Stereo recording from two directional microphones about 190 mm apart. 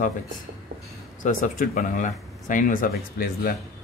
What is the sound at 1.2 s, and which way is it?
Speech, 45° left (ahead or behind).